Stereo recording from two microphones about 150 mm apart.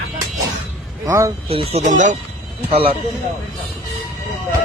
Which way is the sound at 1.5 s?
40° right (ahead or behind).